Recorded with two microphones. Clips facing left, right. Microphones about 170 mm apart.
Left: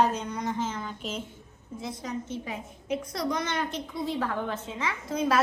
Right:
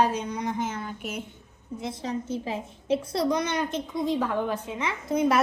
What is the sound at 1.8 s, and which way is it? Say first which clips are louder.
A woman's voice: right 3 dB; 25° right (ahead or behind).